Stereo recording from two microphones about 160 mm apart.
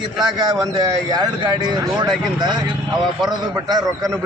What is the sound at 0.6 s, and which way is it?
A man's voice, 25° right (ahead or behind).